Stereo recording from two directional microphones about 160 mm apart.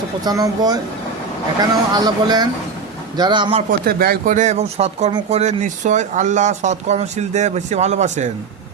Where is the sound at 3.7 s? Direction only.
70° right (ahead or behind).